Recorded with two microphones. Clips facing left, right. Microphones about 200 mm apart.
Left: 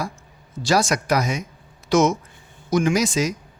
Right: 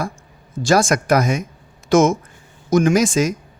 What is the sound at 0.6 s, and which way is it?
Speech, 50° right (ahead or behind).